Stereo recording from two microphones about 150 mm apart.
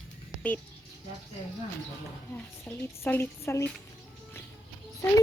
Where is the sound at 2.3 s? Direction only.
10° left (ahead or behind).